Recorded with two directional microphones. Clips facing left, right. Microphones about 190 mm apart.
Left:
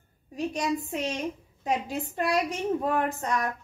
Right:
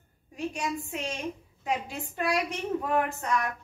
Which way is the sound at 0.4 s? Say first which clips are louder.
Left 4 dB; 35° left (ahead or behind).